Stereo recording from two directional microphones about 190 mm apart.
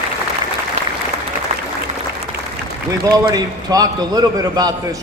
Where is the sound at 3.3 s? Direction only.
20° right (ahead or behind).